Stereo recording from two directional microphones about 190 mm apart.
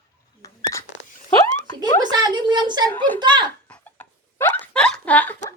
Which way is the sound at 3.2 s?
25° right (ahead or behind).